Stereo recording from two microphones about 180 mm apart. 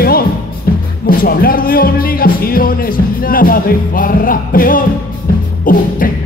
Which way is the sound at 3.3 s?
55° left (ahead or behind).